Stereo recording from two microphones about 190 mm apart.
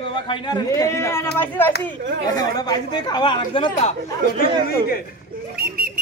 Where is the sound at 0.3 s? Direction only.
20° left (ahead or behind).